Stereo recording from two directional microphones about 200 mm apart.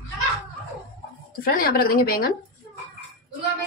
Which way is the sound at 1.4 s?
45° left (ahead or behind).